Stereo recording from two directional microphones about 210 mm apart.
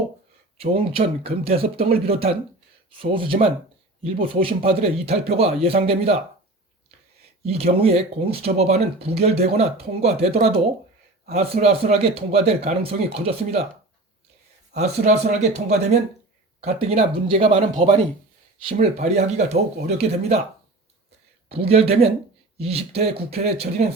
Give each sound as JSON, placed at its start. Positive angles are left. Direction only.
{"t": 0.5, "sound": "speech", "side_deg": -25}
{"t": 4.4, "sound": "speech", "side_deg": -30}
{"t": 7.4, "sound": "speech", "side_deg": -30}
{"t": 14.8, "sound": "speech", "side_deg": -30}
{"t": 21.5, "sound": "speech", "side_deg": -30}